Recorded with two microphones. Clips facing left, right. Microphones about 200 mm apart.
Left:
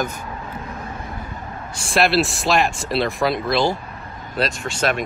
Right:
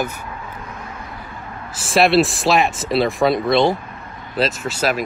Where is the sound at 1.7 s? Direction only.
Centre (ahead or behind).